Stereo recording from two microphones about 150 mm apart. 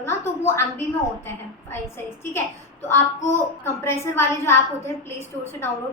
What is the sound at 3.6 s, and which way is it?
Speech, 15° left (ahead or behind).